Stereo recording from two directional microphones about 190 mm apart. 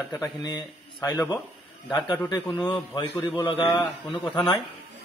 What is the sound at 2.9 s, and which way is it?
Speech, 10° left (ahead or behind).